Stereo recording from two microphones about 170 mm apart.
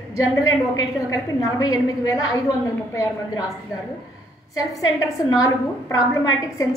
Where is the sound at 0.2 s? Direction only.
20° left (ahead or behind).